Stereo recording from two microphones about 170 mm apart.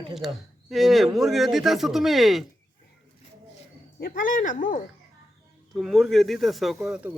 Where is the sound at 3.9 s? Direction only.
60° left (ahead or behind).